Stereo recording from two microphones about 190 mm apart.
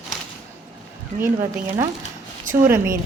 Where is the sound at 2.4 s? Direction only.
45° right (ahead or behind).